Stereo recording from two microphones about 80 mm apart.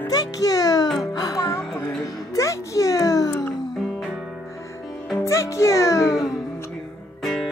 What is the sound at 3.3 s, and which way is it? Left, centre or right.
Music, left.